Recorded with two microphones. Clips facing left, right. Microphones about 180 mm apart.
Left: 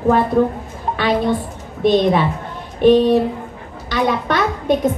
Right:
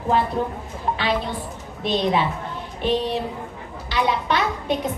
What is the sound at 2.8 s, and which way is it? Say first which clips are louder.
A woman's voice: left 11 dB; 55° left (ahead or behind).